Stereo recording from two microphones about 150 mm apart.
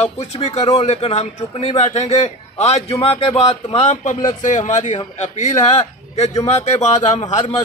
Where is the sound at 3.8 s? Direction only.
55° left (ahead or behind).